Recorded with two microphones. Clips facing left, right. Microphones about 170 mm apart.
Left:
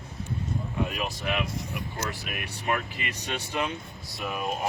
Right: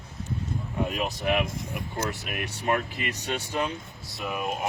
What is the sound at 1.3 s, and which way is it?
Speech, 50° right (ahead or behind).